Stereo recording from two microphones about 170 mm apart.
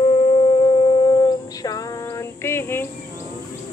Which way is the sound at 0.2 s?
35° left (ahead or behind).